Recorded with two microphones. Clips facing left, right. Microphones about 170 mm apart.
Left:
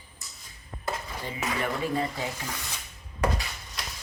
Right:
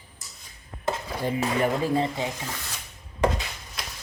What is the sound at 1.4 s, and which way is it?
Speech, 30° right (ahead or behind).